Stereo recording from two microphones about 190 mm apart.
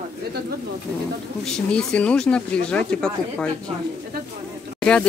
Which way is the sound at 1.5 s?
5° left (ahead or behind).